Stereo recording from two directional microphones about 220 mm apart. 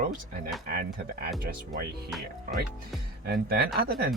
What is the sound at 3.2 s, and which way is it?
Speech, 45° right (ahead or behind).